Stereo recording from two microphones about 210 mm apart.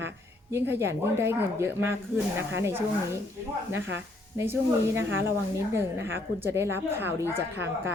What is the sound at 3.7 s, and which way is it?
Speech, 60° right (ahead or behind).